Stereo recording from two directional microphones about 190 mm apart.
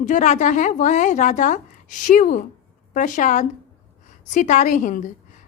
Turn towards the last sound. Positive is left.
turn(degrees=40)  # may be behind; listen again after turning